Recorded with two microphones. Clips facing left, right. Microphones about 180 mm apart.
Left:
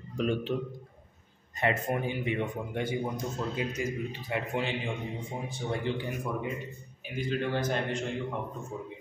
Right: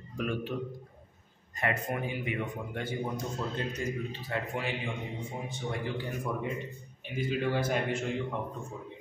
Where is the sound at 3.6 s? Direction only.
10° left (ahead or behind).